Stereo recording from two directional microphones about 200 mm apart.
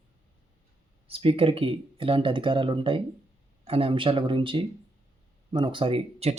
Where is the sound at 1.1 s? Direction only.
25° right (ahead or behind).